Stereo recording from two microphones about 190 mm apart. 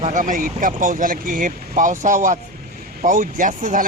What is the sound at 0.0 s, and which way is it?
Speech, 40° right (ahead or behind).